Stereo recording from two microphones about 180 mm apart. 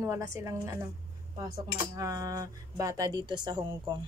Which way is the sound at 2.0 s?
20° right (ahead or behind).